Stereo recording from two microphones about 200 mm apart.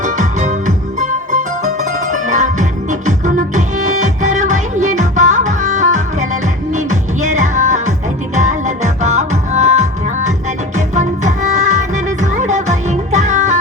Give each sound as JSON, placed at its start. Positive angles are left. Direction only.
{"t": 0.0, "sound": "music", "side_deg": -40}